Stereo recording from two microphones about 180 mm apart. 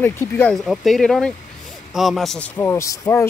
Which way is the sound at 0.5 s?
Centre (ahead or behind).